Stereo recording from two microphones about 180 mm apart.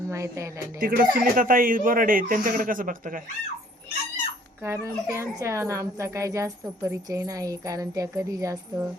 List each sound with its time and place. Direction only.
0.1 s a woman's voice: 15° right (ahead or behind)
0.8 s speech: 50° right (ahead or behind)
4.6 s speech: 15° right (ahead or behind)